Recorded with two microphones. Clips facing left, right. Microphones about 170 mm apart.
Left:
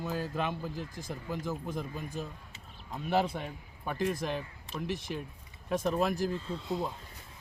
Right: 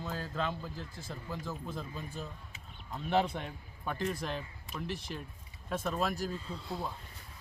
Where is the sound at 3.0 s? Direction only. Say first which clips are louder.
Left 1 dB; 5° left (ahead or behind).